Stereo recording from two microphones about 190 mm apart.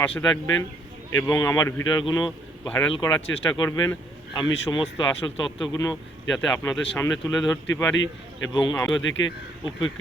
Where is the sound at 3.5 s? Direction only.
20° left (ahead or behind).